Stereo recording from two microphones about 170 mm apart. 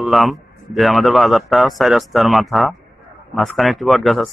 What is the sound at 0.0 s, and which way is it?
A man's voice, centre (ahead or behind).